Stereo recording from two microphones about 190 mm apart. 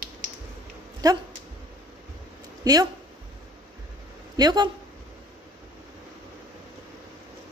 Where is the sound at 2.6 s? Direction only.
20° right (ahead or behind).